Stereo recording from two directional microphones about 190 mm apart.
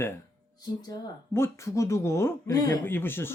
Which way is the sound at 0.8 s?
20° left (ahead or behind).